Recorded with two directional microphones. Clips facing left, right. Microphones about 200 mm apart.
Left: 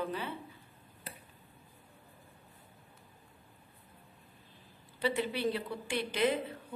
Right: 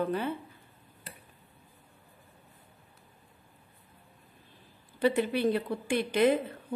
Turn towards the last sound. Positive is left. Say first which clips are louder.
# right 6 dB
turn(degrees=-50)  # may be behind; listen again after turning